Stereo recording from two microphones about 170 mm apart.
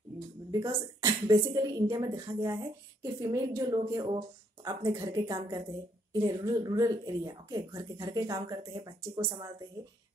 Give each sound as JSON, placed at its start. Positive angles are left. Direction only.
{"t": 0.5, "sound": "speech", "side_deg": -20}